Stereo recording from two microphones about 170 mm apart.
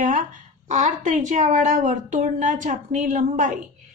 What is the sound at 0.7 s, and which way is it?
A woman's voice, 45° right (ahead or behind).